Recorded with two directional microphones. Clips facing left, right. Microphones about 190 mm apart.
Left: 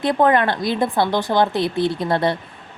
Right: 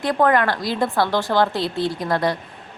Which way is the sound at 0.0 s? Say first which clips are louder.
Left 1 dB; 25° left (ahead or behind).